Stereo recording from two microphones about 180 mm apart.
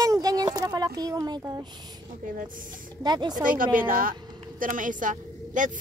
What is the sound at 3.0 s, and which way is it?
Speech, 25° right (ahead or behind).